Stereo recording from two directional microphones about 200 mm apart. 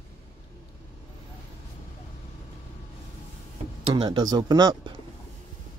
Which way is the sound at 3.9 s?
20° right (ahead or behind).